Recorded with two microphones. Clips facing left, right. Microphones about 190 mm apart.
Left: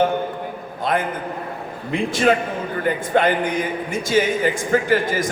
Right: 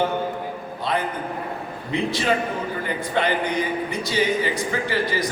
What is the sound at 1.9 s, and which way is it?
A man's voice, 50° left (ahead or behind).